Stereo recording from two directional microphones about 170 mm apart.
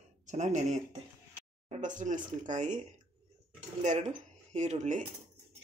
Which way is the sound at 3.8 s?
45° right (ahead or behind).